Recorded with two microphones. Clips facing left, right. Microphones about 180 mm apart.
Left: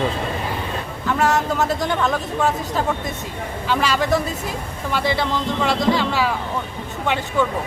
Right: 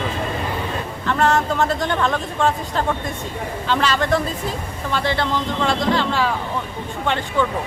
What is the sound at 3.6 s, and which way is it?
Speech, 10° left (ahead or behind).